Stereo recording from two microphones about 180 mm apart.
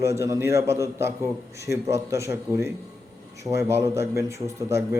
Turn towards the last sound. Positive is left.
turn(degrees=-15)  # may be behind; listen again after turning